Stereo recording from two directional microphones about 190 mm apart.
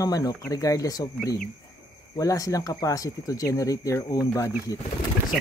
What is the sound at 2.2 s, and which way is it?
Speech, 20° left (ahead or behind).